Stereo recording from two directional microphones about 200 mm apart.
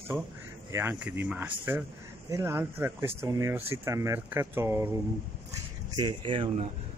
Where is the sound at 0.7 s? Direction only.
10° right (ahead or behind).